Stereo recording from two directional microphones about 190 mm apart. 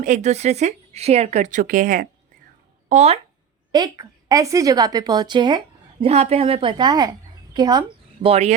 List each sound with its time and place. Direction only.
0.0 s speech: 35° right (ahead or behind)
2.9 s speech: 35° right (ahead or behind)
3.7 s speech: 20° right (ahead or behind)
6.1 s a woman's voice: 35° right (ahead or behind)